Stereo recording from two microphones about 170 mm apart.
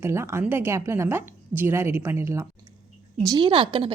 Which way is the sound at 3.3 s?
30° right (ahead or behind).